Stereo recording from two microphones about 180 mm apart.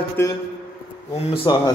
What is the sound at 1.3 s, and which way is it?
Speech, 25° left (ahead or behind).